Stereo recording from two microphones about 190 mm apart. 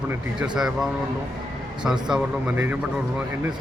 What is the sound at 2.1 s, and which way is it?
Speech, 10° right (ahead or behind).